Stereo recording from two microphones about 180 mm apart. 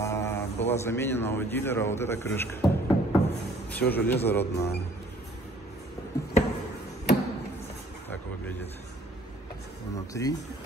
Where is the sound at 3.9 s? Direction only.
10° left (ahead or behind).